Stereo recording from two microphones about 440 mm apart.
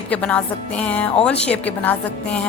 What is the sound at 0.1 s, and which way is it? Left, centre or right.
A woman's voice, centre.